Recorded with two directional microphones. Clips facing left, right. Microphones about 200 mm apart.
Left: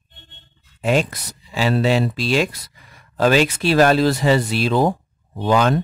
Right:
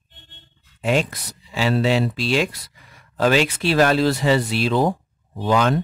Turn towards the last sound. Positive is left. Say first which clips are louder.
# left 2 dB
turn(degrees=40)  # may be behind; listen again after turning